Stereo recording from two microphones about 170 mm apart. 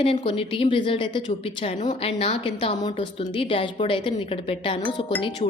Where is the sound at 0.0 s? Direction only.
30° left (ahead or behind).